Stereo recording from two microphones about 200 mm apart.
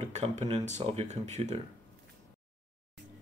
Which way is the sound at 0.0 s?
35° right (ahead or behind).